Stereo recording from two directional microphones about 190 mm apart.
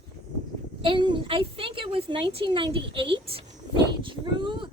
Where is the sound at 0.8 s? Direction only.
25° right (ahead or behind).